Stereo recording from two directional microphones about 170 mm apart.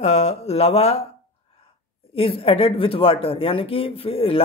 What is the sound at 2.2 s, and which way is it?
Speech, 35° left (ahead or behind).